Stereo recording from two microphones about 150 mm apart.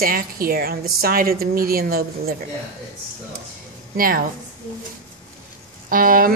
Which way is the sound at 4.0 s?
70° right (ahead or behind).